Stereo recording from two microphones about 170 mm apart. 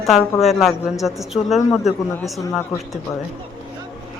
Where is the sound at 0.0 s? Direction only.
Centre (ahead or behind).